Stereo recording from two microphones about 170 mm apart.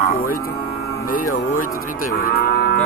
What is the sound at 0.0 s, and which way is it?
Cattle, 55° left (ahead or behind).